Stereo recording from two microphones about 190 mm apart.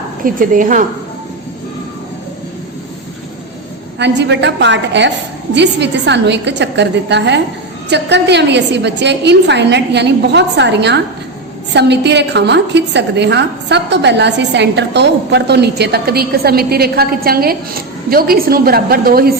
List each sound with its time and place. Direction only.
0.3 s a woman's voice: 45° right (ahead or behind)
3.9 s a woman's voice: 65° right (ahead or behind)